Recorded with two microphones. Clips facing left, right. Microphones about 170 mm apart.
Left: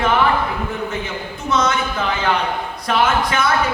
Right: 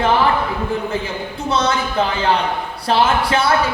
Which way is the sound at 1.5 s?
30° right (ahead or behind).